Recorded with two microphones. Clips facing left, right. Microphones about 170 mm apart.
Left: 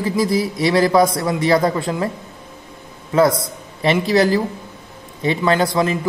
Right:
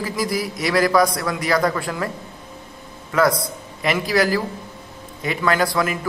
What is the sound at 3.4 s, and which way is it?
Speech, 25° left (ahead or behind).